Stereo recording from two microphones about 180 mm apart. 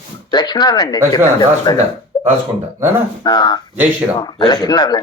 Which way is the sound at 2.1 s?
25° left (ahead or behind).